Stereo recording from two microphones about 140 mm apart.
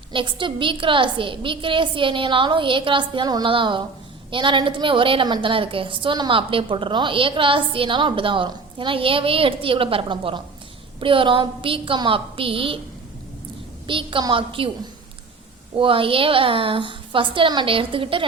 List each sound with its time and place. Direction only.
0.1 s a woman's voice: 35° right (ahead or behind)
13.8 s a woman's voice: 35° right (ahead or behind)
15.7 s a woman's voice: 40° right (ahead or behind)